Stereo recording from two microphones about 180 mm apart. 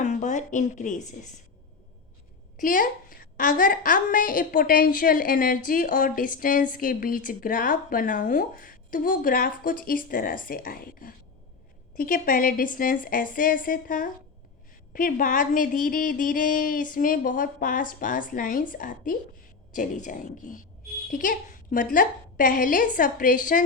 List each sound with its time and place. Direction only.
0.0 s speech: 40° left (ahead or behind)
2.6 s a woman's voice: 50° left (ahead or behind)